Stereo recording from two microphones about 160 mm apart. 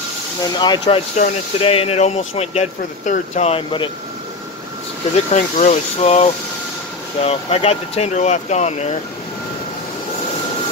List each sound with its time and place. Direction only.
0.4 s speech: 25° left (ahead or behind)
0.8 s speech: 50° left (ahead or behind)
1.6 s speech: 35° left (ahead or behind)
5.1 s speech: 45° left (ahead or behind)